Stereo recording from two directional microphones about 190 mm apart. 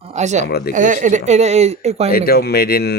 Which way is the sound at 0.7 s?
40° right (ahead or behind).